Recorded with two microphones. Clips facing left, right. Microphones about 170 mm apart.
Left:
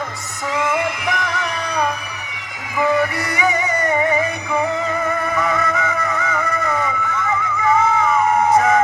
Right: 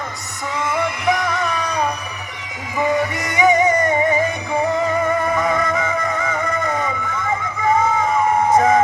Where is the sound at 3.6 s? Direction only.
30° right (ahead or behind).